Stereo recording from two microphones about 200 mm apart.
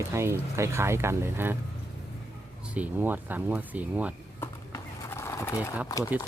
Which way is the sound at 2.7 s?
10° right (ahead or behind).